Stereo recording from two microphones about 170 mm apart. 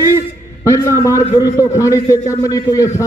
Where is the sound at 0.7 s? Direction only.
15° left (ahead or behind).